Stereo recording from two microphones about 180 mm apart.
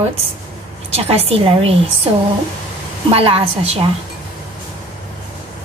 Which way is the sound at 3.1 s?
30° right (ahead or behind).